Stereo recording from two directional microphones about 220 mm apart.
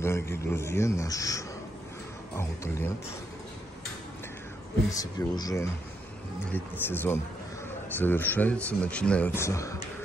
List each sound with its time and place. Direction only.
0.0 s speech: 10° left (ahead or behind)
4.9 s speech: 15° left (ahead or behind)